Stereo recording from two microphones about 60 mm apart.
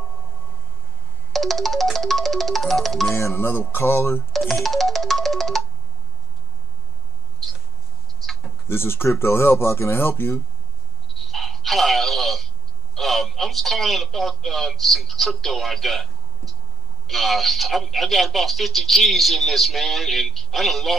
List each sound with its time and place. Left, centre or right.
1.3 s music: centre
3.2 s speech: left
4.3 s music: centre
7.4 s mouse: centre
8.3 s insect: centre
8.6 s speech: left
11.1 s telephone: centre
12.9 s speech: centre